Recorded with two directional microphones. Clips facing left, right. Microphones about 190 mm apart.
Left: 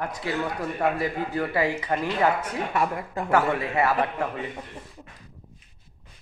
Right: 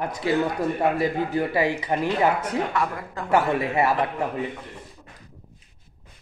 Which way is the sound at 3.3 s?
20° right (ahead or behind).